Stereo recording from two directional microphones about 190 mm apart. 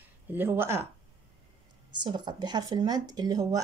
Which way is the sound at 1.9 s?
25° right (ahead or behind).